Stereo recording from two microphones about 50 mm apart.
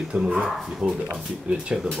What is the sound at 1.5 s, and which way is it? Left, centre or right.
Speech, right.